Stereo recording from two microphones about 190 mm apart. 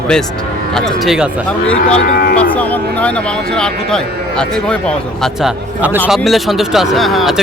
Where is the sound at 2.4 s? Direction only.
10° left (ahead or behind).